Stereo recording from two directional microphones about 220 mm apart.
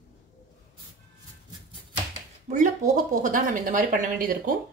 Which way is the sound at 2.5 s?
35° right (ahead or behind).